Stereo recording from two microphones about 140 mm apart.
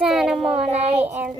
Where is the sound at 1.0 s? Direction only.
10° right (ahead or behind).